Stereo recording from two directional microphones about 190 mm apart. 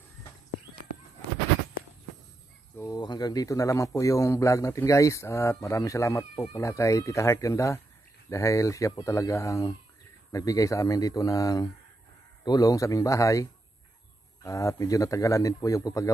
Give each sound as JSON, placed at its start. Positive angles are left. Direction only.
{"t": 2.8, "sound": "speech", "side_deg": 20}